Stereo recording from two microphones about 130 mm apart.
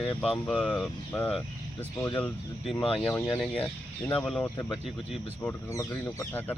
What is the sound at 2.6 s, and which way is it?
Speech, centre (ahead or behind).